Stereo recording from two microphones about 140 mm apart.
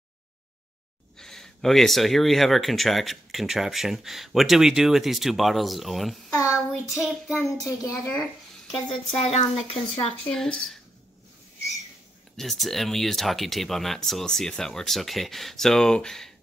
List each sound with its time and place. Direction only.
1.1 s speech: 5° left (ahead or behind)
6.3 s a sound: 15° left (ahead or behind)
6.9 s speech: centre (ahead or behind)
7.6 s a child's voice: 20° left (ahead or behind)
8.7 s speech: 40° left (ahead or behind)
10.2 s speech: 5° left (ahead or behind)
12.4 s speech: centre (ahead or behind)